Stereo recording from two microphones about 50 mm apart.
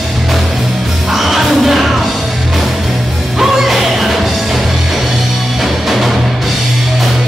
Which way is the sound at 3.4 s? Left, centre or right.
Centre.